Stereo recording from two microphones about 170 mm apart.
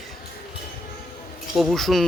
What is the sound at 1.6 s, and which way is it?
Speech, centre (ahead or behind).